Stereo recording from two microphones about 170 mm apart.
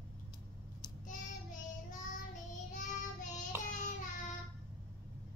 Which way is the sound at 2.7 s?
45° left (ahead or behind).